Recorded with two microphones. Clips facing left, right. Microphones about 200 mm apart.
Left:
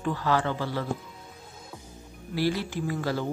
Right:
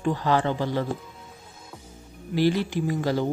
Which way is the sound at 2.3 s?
20° right (ahead or behind).